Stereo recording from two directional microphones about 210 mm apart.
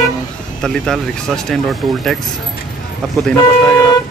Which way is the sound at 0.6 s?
Centre (ahead or behind).